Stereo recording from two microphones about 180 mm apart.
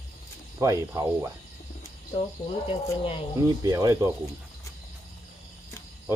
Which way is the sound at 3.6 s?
20° right (ahead or behind).